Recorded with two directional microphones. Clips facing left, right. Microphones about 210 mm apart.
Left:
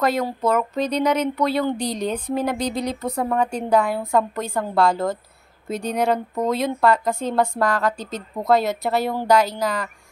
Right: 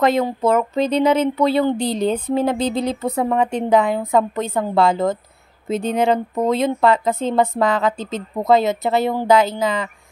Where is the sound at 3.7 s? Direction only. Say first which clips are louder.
Right 2 dB; 20° right (ahead or behind).